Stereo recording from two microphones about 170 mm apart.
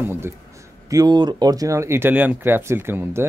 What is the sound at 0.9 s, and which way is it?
Speech, 25° right (ahead or behind).